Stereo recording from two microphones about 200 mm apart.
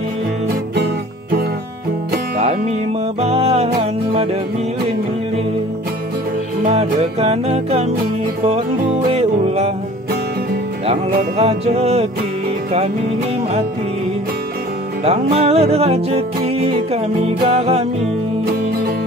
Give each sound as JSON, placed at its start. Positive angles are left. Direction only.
{"t": 2.3, "sound": "music", "side_deg": -30}
{"t": 6.6, "sound": "music", "side_deg": -30}
{"t": 9.1, "sound": "music", "side_deg": -30}
{"t": 11.3, "sound": "music", "side_deg": -30}
{"t": 15.0, "sound": "music", "side_deg": -30}